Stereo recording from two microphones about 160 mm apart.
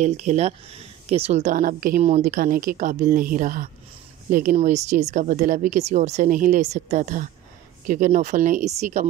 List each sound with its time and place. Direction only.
0.0 s speech: 45° right (ahead or behind)
4.6 s speech: 50° right (ahead or behind)